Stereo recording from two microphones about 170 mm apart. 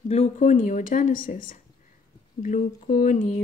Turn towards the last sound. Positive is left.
turn(degrees=50)  # may be behind; listen again after turning